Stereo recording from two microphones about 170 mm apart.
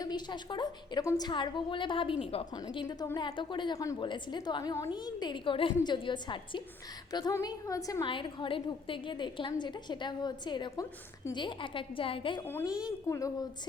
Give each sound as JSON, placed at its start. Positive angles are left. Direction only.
{"t": 0.0, "sound": "a woman's voice", "side_deg": 25}
{"t": 2.6, "sound": "a woman's voice", "side_deg": 20}
{"t": 12.6, "sound": "a woman's voice", "side_deg": -5}
{"t": 13.1, "sound": "a woman's voice", "side_deg": 20}